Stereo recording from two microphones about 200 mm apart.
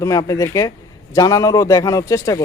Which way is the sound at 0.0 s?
15° left (ahead or behind).